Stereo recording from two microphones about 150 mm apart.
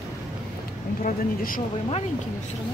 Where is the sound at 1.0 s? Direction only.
70° left (ahead or behind).